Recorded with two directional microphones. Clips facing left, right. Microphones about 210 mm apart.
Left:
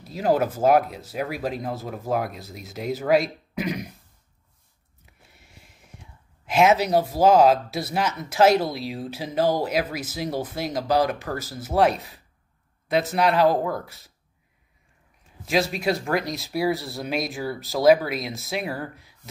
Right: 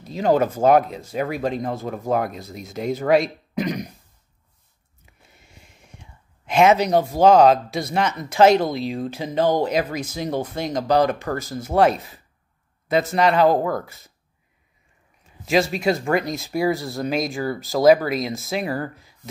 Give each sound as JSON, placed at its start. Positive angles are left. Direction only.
{"t": 0.0, "sound": "speech", "side_deg": 5}
{"t": 5.0, "sound": "a sound", "side_deg": 0}
{"t": 8.7, "sound": "speech", "side_deg": 5}
{"t": 15.4, "sound": "speech", "side_deg": 0}